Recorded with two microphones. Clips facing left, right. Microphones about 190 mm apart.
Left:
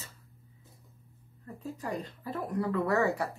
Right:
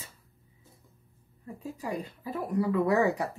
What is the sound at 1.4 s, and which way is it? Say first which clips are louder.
Speech: right 1 dB; 10° right (ahead or behind).